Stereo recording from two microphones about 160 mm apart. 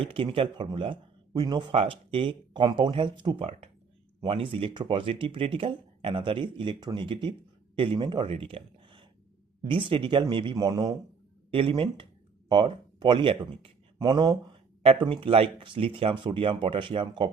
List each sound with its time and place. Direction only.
0.0 s a man's voice: 35° right (ahead or behind)